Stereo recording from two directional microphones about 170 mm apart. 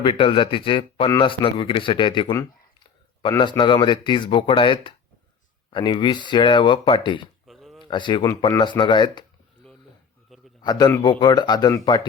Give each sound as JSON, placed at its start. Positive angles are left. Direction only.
{"t": 0.0, "sound": "a man's voice", "side_deg": 30}
{"t": 7.4, "sound": "a sound", "side_deg": 0}
{"t": 7.9, "sound": "speech", "side_deg": 30}
{"t": 10.6, "sound": "speech", "side_deg": 25}